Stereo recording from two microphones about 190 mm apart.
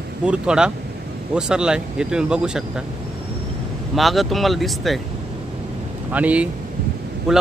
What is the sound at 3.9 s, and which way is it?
A man's voice, centre (ahead or behind).